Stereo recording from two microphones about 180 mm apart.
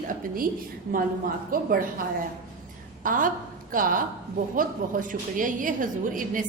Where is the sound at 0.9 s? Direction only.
50° right (ahead or behind).